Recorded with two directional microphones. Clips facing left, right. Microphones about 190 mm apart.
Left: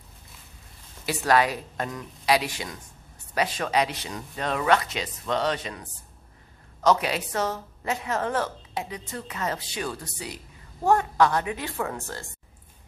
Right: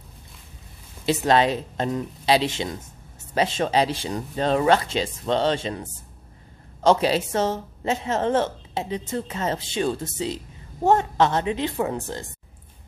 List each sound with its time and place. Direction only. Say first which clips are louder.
1.0 s a woman's voice: right 3 dB; 25° right (ahead or behind)